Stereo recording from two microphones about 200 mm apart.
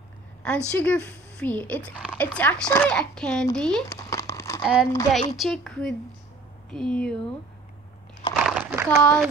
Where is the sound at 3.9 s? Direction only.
15° left (ahead or behind).